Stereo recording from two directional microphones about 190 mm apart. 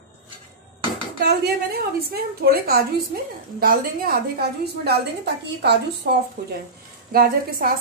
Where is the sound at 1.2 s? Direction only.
55° right (ahead or behind).